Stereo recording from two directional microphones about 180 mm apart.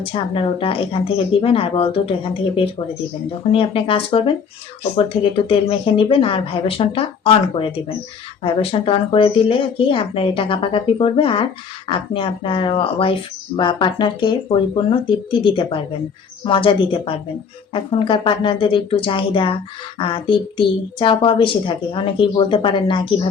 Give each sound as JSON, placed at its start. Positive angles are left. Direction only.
{"t": 0.0, "sound": "speech", "side_deg": 30}
{"t": 3.5, "sound": "speech", "side_deg": 30}